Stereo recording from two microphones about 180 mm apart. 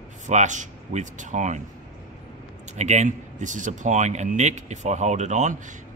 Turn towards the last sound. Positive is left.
turn(degrees=-40)  # may be behind; listen again after turning